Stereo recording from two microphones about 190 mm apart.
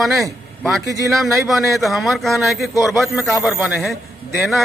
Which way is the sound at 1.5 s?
Centre (ahead or behind).